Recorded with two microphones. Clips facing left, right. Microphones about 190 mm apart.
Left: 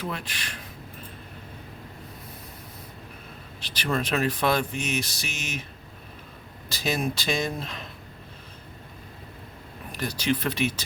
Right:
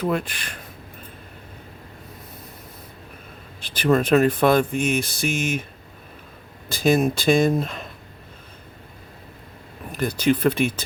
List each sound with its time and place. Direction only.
0.0 s speech: 50° right (ahead or behind)
3.6 s speech: 50° right (ahead or behind)
6.7 s speech: 50° right (ahead or behind)
10.0 s speech: 50° right (ahead or behind)